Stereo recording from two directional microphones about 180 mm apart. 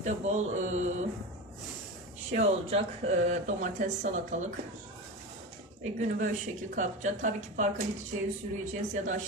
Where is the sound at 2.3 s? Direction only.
35° right (ahead or behind).